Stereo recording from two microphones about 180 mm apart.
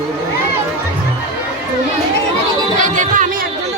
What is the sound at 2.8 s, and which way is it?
Music, 45° right (ahead or behind).